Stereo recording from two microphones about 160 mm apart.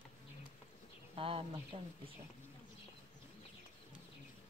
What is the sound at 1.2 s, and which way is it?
Speech, 35° right (ahead or behind).